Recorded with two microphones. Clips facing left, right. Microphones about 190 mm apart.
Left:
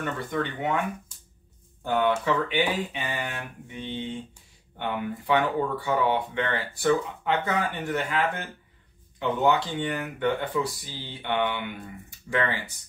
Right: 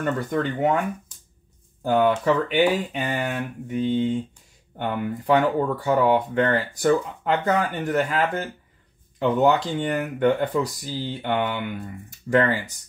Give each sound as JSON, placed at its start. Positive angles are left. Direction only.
{"t": 0.0, "sound": "speech", "side_deg": -40}
{"t": 1.8, "sound": "speech", "side_deg": -40}